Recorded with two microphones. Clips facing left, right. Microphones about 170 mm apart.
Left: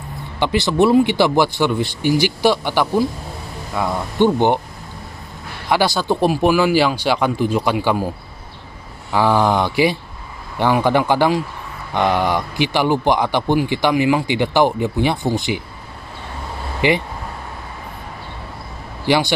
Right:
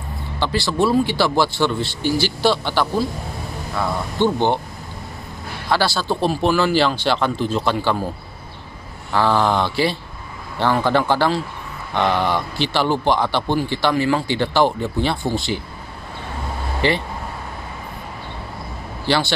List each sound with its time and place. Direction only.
0.4 s a man's voice: 20° left (ahead or behind)
5.7 s a man's voice: 15° left (ahead or behind)
9.1 s a man's voice: 15° left (ahead or behind)
16.8 s a man's voice: 15° left (ahead or behind)
19.0 s a man's voice: 15° left (ahead or behind)